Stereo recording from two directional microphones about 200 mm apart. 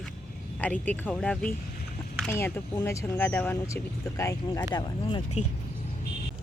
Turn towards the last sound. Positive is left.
turn(degrees=25)  # may be behind; listen again after turning